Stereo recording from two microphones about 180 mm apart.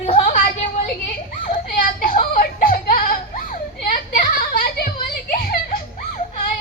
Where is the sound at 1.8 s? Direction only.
50° left (ahead or behind).